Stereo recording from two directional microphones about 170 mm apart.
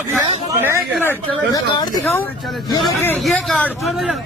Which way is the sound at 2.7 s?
15° left (ahead or behind).